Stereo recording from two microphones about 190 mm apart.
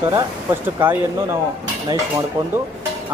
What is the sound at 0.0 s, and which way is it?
Speech, 15° right (ahead or behind).